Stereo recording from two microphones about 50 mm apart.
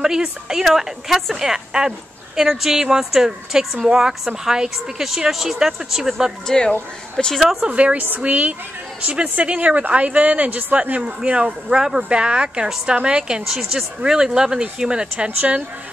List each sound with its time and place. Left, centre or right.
0.0 s a woman's voice: centre
6.4 s speech: centre
7.6 s a woman's voice: right
13.5 s a woman's voice: centre; by 15.6 s right